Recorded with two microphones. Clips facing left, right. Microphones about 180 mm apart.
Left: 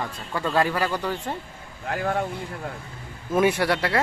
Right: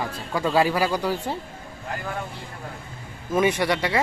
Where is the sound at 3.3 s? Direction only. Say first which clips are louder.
Even; centre (ahead or behind).